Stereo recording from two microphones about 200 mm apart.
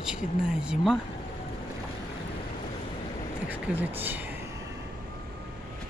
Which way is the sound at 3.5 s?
10° right (ahead or behind).